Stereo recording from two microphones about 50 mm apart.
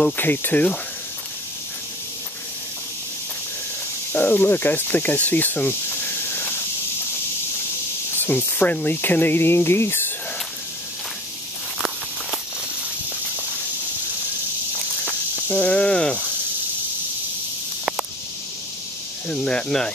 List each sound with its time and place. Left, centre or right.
0.2 s speech: left
4.1 s speech: left
8.1 s spray: left
8.8 s speech: left
15.5 s snake: left
19.2 s speech: centre